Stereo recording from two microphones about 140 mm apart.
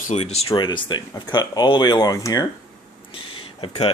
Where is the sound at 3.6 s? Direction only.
45° left (ahead or behind).